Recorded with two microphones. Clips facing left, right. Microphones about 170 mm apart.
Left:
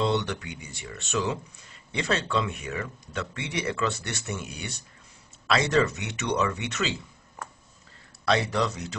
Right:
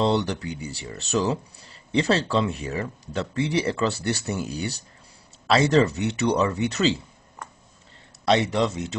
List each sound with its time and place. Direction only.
0.0 s speech: 35° right (ahead or behind)
8.3 s speech: 25° right (ahead or behind)